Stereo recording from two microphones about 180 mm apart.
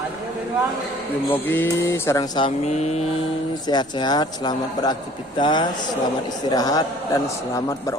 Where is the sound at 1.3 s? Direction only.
10° left (ahead or behind).